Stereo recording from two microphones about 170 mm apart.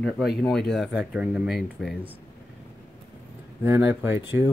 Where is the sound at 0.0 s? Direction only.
Centre (ahead or behind).